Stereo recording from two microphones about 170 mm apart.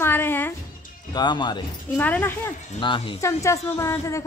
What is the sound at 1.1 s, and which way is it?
Speech, 25° left (ahead or behind).